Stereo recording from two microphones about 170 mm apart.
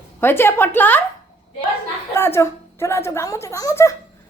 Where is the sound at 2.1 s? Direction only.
15° left (ahead or behind).